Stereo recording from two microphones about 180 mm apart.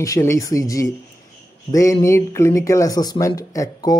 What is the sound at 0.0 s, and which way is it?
Speech, 15° left (ahead or behind).